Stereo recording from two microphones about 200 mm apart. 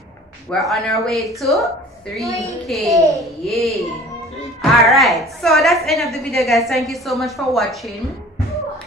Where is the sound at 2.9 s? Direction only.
15° right (ahead or behind).